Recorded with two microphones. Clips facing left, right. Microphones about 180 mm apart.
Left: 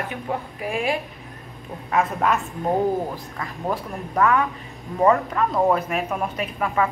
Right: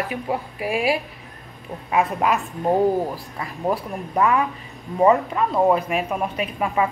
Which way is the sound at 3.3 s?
15° right (ahead or behind).